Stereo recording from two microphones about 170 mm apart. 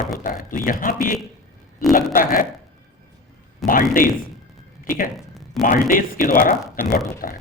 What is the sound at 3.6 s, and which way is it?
Speech, 55° left (ahead or behind).